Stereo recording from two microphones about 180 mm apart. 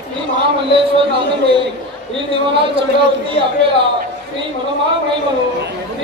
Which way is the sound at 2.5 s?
30° right (ahead or behind).